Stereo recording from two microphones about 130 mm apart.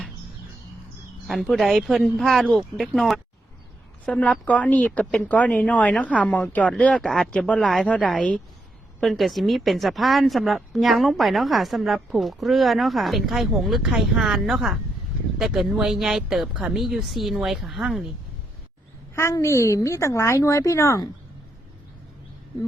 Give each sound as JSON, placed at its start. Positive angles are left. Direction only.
{"t": 1.3, "sound": "speech", "side_deg": 0}
{"t": 19.1, "sound": "a woman's voice", "side_deg": 20}